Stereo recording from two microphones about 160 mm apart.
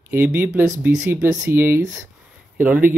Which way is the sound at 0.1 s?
10° right (ahead or behind).